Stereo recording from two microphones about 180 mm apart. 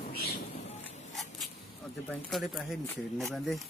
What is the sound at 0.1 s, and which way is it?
Rain, 60° left (ahead or behind).